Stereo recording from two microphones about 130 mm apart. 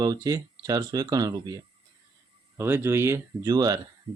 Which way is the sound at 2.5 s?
20° right (ahead or behind).